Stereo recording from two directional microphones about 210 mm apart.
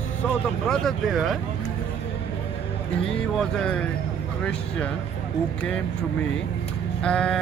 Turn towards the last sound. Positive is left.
turn(degrees=5)  # may be behind; listen again after turning